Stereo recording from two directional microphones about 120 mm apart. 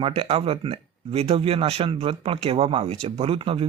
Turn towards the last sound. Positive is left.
turn(degrees=-50)  # may be behind; listen again after turning